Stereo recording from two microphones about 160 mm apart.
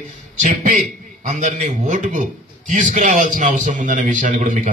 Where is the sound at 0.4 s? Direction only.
50° right (ahead or behind).